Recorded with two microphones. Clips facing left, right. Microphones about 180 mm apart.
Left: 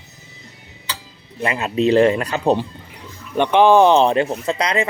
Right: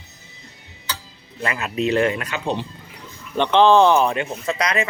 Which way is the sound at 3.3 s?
10° left (ahead or behind).